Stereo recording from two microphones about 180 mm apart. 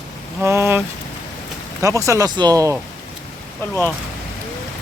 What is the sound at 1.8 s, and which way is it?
Speech, 15° right (ahead or behind).